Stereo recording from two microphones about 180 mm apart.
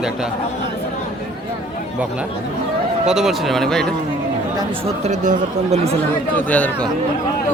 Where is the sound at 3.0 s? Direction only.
Centre (ahead or behind).